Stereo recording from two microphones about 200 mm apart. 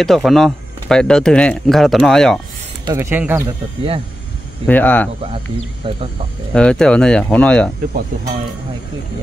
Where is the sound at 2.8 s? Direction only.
15° right (ahead or behind).